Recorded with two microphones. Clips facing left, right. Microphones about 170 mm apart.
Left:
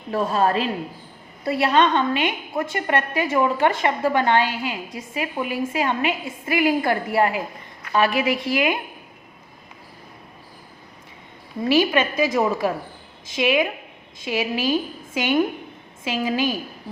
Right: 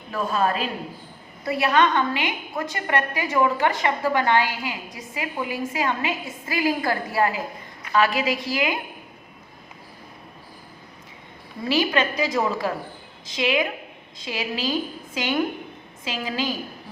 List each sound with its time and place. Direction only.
0.1 s a woman's voice: 30° left (ahead or behind)
11.7 s a woman's voice: 20° left (ahead or behind)